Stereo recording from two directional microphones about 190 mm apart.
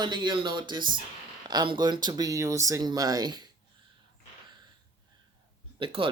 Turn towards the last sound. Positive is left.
turn(degrees=-25)  # may be behind; listen again after turning